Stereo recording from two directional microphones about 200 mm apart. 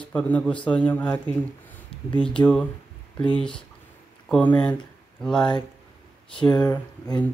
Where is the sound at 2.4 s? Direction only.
20° left (ahead or behind).